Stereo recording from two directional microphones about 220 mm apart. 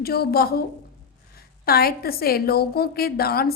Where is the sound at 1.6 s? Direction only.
45° left (ahead or behind).